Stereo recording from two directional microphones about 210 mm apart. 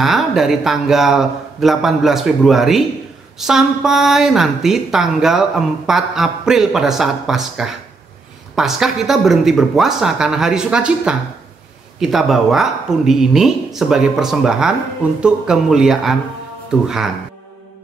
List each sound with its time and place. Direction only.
0.0 s a woman's voice: centre (ahead or behind)